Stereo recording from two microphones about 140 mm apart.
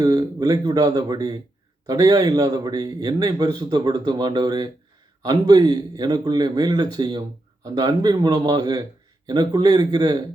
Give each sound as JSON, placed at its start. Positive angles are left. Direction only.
{"t": 0.0, "sound": "speech", "side_deg": -25}